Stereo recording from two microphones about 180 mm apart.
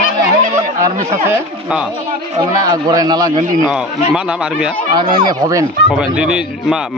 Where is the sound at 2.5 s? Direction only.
20° right (ahead or behind).